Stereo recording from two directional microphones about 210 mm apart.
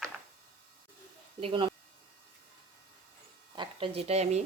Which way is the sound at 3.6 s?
25° right (ahead or behind).